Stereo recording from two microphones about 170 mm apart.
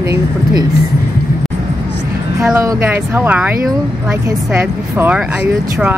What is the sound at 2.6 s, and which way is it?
Speech, 10° right (ahead or behind).